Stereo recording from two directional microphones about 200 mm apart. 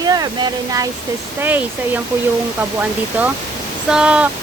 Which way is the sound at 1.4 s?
10° right (ahead or behind).